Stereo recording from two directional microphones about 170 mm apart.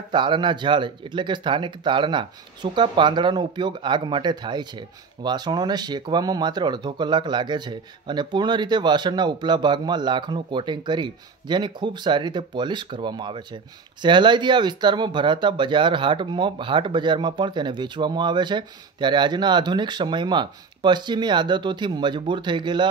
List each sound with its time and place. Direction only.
0.1 s speech: 30° right (ahead or behind)